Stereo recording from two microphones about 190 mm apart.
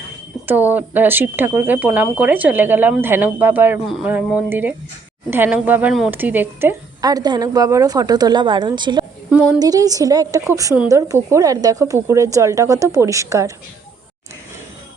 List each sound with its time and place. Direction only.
0.4 s a woman's voice: 10° right (ahead or behind)